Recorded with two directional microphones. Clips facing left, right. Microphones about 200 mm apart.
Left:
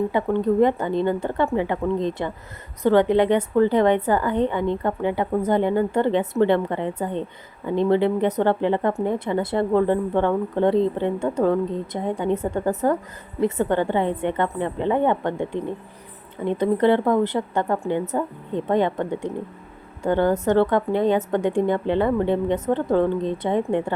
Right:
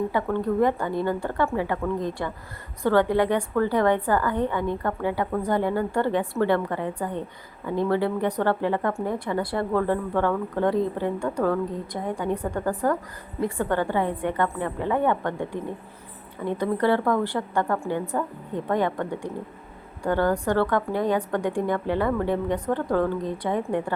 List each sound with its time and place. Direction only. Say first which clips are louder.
0.1 s a woman's voice: left 4 dB; 20° left (ahead or behind)